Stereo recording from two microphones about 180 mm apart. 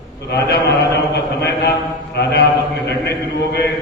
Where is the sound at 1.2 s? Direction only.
65° left (ahead or behind).